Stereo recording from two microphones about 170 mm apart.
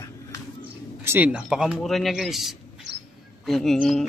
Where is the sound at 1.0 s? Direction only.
10° right (ahead or behind).